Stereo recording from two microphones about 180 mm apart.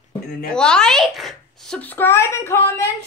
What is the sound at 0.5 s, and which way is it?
A child's voice, 5° left (ahead or behind).